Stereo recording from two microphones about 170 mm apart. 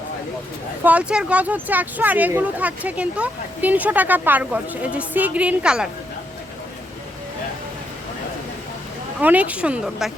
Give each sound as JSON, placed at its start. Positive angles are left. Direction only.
{"t": 0.9, "sound": "speech", "side_deg": -5}
{"t": 9.2, "sound": "speech", "side_deg": -10}